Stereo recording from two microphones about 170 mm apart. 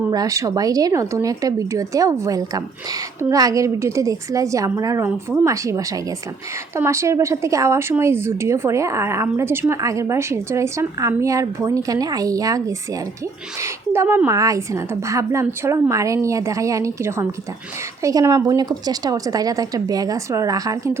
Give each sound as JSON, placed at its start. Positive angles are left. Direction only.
{"t": 0.1, "sound": "a woman's voice", "side_deg": -20}